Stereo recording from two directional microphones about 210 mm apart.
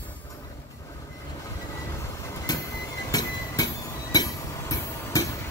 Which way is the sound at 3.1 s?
15° left (ahead or behind).